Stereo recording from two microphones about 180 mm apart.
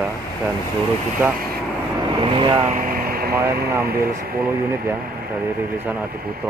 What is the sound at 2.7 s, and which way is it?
Air conditioning, 50° right (ahead or behind).